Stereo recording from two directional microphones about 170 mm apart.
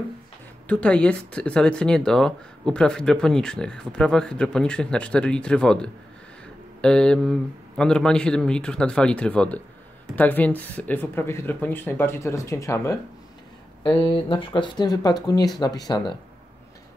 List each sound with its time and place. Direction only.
0.7 s speech: 10° left (ahead or behind)
13.8 s speech: 30° left (ahead or behind)